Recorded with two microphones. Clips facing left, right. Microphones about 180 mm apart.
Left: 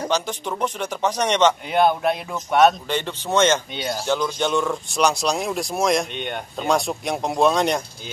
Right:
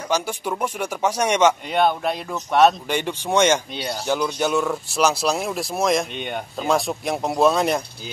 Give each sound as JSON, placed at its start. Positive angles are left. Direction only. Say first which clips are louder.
{"t": 0.1, "sound": "speech", "louder": "even", "side_deg": -10}
{"t": 1.7, "sound": "speech", "louder": "left 2 dB", "side_deg": 0}
{"t": 2.9, "sound": "speech", "louder": "right 1 dB", "side_deg": -10}
{"t": 3.7, "sound": "speech", "louder": "left 1 dB", "side_deg": 0}